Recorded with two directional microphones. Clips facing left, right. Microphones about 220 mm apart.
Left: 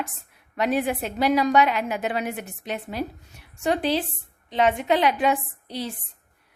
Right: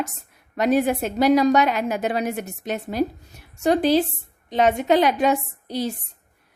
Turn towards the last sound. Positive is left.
turn(degrees=-45)  # may be behind; listen again after turning